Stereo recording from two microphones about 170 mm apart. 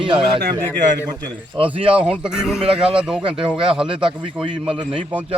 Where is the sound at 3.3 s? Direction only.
30° right (ahead or behind).